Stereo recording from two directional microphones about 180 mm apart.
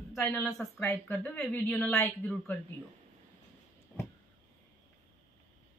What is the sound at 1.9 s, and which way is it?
Speech, 15° left (ahead or behind).